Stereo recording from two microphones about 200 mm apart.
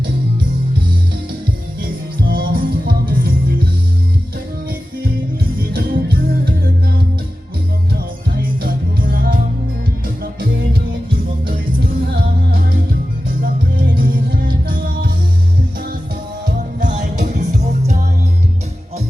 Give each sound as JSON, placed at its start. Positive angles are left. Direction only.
{"t": 2.3, "sound": "music", "side_deg": -50}
{"t": 5.5, "sound": "music", "side_deg": -45}
{"t": 7.9, "sound": "music", "side_deg": -45}
{"t": 12.1, "sound": "music", "side_deg": -50}
{"t": 13.7, "sound": "music", "side_deg": -45}
{"t": 16.8, "sound": "music", "side_deg": -35}